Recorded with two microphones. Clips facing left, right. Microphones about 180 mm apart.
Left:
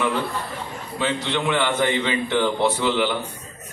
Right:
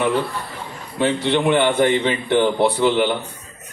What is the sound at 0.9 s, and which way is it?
Speech, 55° right (ahead or behind).